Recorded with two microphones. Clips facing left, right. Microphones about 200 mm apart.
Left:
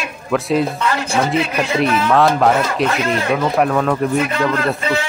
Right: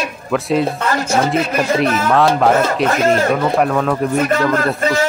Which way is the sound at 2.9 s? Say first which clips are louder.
Right 4 dB; 45° right (ahead or behind).